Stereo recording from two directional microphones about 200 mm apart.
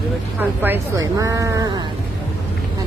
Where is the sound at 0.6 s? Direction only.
15° right (ahead or behind).